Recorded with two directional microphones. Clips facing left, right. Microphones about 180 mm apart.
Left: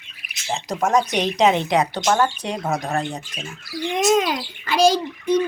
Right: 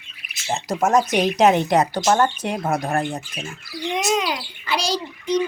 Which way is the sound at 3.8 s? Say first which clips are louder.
Left 4 dB; 50° left (ahead or behind).